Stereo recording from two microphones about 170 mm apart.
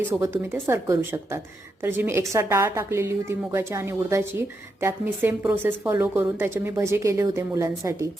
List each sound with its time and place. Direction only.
0.1 s a woman's voice: 15° right (ahead or behind)